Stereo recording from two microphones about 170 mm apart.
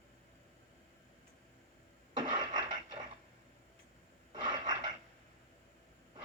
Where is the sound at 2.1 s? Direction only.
25° right (ahead or behind).